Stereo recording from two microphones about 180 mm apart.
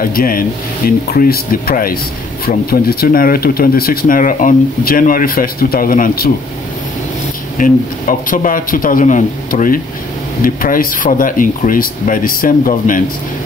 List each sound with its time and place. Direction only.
0.0 s speech: 55° left (ahead or behind)
7.5 s speech: 50° left (ahead or behind)